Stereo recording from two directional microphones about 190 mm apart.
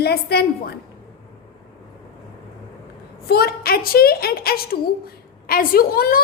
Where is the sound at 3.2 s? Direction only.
55° left (ahead or behind).